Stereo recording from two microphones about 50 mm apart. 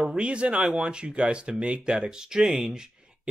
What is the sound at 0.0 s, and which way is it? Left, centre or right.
Speech, right.